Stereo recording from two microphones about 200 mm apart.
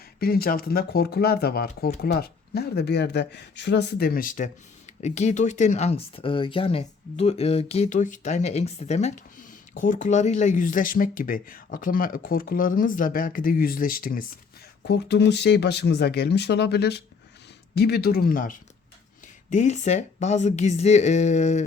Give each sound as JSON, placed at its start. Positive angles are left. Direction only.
{"t": 0.2, "sound": "speech", "side_deg": 50}
{"t": 14.8, "sound": "speech", "side_deg": 60}